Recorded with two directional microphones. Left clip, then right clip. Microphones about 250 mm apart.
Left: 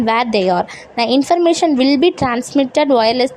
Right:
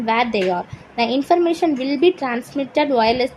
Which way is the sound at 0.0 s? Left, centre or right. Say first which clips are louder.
Left 4 dB; left.